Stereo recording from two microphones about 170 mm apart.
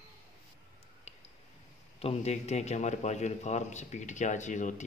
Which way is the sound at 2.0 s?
40° left (ahead or behind).